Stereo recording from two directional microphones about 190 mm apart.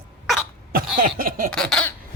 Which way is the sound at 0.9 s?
45° right (ahead or behind).